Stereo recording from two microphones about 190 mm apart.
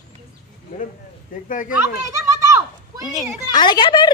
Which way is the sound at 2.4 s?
15° right (ahead or behind).